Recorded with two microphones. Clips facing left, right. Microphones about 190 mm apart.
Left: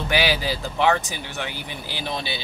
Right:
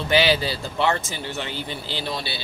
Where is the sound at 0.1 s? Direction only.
15° left (ahead or behind).